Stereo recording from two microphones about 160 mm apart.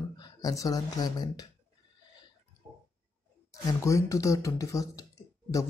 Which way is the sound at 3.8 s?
20° left (ahead or behind).